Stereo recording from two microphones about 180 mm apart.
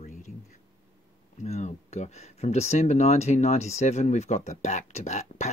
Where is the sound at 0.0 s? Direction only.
40° left (ahead or behind).